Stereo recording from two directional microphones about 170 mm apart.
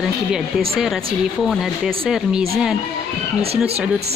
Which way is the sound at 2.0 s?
5° right (ahead or behind).